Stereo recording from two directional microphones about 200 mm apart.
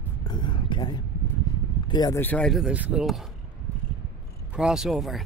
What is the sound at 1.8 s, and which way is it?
Speech, 20° left (ahead or behind).